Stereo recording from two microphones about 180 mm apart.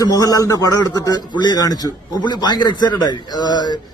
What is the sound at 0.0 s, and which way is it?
Speech, 20° left (ahead or behind).